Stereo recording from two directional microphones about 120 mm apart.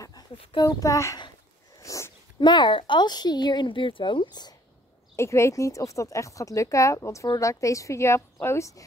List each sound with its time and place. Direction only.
0.6 s speech: 30° left (ahead or behind)
2.4 s a woman's voice: 40° left (ahead or behind)
5.1 s speech: 25° left (ahead or behind)